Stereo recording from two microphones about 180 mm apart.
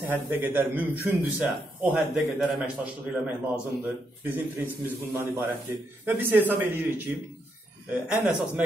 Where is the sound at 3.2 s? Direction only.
10° right (ahead or behind).